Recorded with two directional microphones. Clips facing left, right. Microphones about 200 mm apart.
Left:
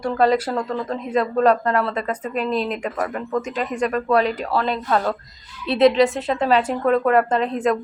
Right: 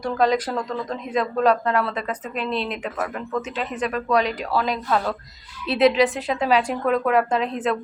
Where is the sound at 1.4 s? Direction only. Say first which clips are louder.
Left 1 dB; 5° right (ahead or behind).